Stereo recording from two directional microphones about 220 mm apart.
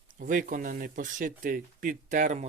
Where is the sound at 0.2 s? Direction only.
40° right (ahead or behind).